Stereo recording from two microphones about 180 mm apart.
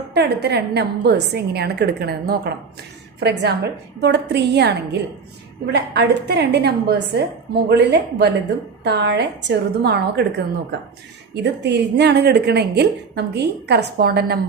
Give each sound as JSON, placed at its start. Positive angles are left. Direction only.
{"t": 0.1, "sound": "a woman's voice", "side_deg": -70}